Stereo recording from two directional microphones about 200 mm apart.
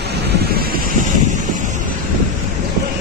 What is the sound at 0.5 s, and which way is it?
Vehicle, 50° right (ahead or behind).